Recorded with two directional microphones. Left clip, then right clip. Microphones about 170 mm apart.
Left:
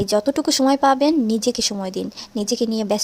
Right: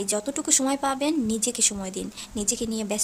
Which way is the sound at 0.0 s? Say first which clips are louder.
Left 9 dB; 35° left (ahead or behind).